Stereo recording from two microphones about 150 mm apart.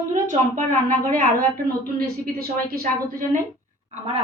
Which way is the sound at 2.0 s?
90° right.